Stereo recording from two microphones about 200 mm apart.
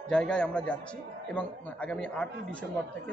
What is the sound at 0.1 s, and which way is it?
A man's voice, 5° left (ahead or behind).